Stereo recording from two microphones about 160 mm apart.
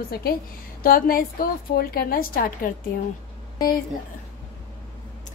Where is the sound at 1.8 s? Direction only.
70° left (ahead or behind).